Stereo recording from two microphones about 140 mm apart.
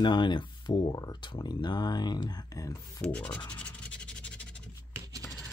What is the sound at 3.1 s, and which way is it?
Scratch, 5° left (ahead or behind).